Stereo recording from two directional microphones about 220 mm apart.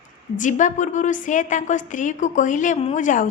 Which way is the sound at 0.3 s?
35° left (ahead or behind).